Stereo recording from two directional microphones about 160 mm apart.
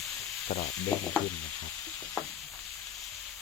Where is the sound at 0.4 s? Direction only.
45° left (ahead or behind).